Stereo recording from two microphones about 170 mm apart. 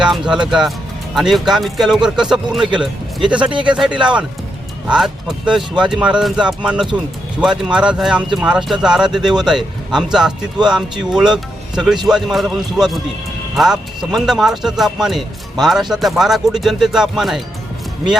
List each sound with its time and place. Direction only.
0.0 s speech: 5° right (ahead or behind)
3.5 s speech: 30° right (ahead or behind)
3.8 s speech: 5° right (ahead or behind)